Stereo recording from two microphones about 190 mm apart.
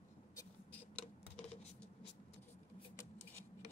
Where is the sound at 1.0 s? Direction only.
40° left (ahead or behind).